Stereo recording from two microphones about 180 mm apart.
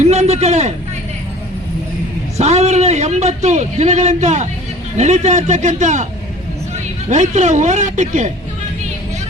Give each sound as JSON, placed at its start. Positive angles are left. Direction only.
{"t": 0.0, "sound": "a man's voice", "side_deg": -40}
{"t": 2.4, "sound": "a man's voice", "side_deg": -35}
{"t": 7.1, "sound": "a man's voice", "side_deg": -40}